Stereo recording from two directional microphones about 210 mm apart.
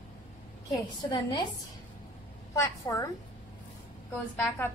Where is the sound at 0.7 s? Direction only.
20° left (ahead or behind).